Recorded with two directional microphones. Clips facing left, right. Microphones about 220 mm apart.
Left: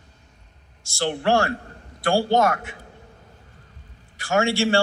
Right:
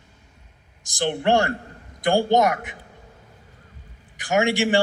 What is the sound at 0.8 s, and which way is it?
A man's voice, 15° right (ahead or behind).